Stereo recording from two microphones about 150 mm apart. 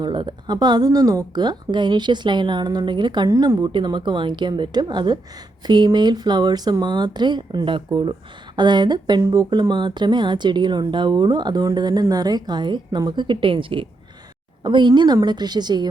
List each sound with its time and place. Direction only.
0.0 s speech: 30° right (ahead or behind)